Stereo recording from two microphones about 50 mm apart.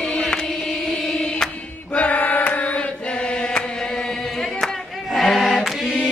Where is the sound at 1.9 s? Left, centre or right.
Left.